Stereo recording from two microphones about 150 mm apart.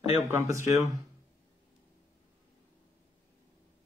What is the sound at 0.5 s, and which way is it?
Speech, 20° right (ahead or behind).